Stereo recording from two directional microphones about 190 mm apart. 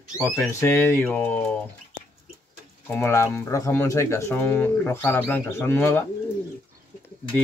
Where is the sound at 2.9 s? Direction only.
15° left (ahead or behind).